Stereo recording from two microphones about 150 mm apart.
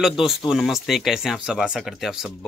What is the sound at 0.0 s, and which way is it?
Speech, 5° right (ahead or behind).